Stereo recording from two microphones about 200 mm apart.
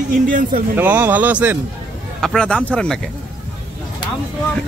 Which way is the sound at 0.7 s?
10° right (ahead or behind).